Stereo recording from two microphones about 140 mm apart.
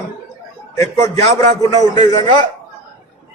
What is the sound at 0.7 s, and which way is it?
A man's voice, 25° left (ahead or behind).